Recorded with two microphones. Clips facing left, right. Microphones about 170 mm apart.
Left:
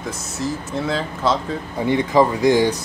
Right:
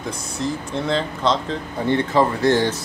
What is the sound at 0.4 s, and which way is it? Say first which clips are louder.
Speech: even; 5° left (ahead or behind).